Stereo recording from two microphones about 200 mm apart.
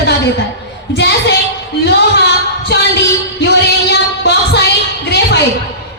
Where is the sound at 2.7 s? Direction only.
55° left (ahead or behind).